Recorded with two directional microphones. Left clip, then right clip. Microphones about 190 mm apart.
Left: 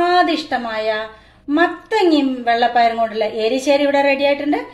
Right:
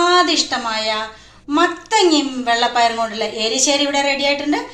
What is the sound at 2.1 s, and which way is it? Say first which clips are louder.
A woman's voice: left 1 dB; 45° left (ahead or behind).